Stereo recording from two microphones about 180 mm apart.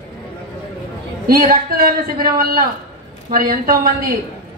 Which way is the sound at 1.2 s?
55° right (ahead or behind).